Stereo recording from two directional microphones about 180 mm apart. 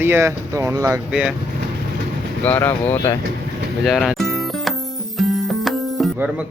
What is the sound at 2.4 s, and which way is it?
Speech, 10° left (ahead or behind).